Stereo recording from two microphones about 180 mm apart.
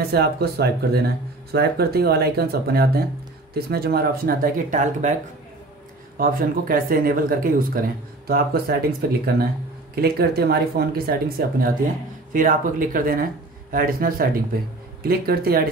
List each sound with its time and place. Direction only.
0.0 s speech: 60° right (ahead or behind); by 5.1 s 45° right (ahead or behind)
6.1 s speech: 55° right (ahead or behind)